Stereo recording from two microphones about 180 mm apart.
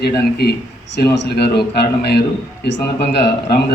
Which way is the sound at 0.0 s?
60° left (ahead or behind).